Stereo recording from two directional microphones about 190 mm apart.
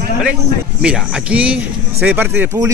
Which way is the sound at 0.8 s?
5° right (ahead or behind).